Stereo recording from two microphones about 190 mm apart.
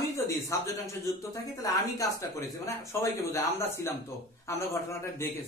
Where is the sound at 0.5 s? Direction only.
15° left (ahead or behind).